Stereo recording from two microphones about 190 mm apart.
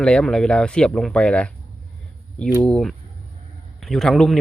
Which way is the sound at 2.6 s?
5° left (ahead or behind).